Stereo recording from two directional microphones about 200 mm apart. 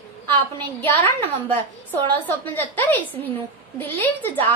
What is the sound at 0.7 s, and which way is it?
A woman's voice, 10° left (ahead or behind).